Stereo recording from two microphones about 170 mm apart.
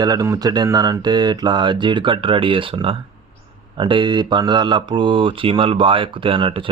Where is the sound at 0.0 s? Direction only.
20° right (ahead or behind).